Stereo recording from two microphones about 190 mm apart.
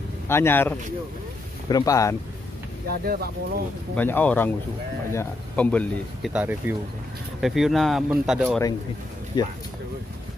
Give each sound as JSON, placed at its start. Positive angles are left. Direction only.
{"t": 0.3, "sound": "a man's voice", "side_deg": 10}
{"t": 2.9, "sound": "speech", "side_deg": -55}
{"t": 3.9, "sound": "a man's voice", "side_deg": 10}
{"t": 6.3, "sound": "speech", "side_deg": -10}
{"t": 9.3, "sound": "speech", "side_deg": 20}